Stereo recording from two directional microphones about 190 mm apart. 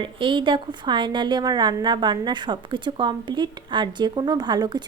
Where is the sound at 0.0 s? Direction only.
25° right (ahead or behind).